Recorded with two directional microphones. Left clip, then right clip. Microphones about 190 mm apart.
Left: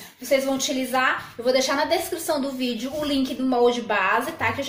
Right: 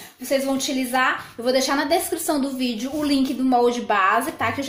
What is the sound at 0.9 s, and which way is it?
A woman's voice, 30° right (ahead or behind).